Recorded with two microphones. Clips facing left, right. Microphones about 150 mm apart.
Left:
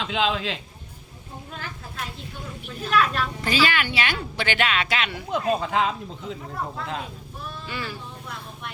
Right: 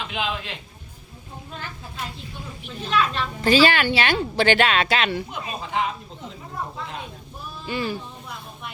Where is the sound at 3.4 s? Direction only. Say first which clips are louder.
Right 7 dB; 30° right (ahead or behind).